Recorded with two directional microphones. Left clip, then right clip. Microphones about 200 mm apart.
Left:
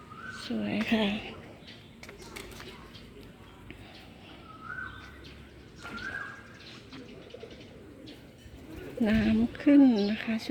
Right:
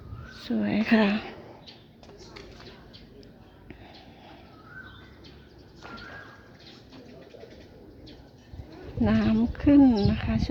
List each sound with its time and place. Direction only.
0.4 s speech: 20° right (ahead or behind)
9.0 s speech: 10° right (ahead or behind)